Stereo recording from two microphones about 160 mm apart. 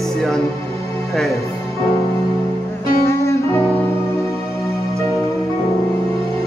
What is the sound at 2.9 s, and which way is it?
Music, 20° left (ahead or behind).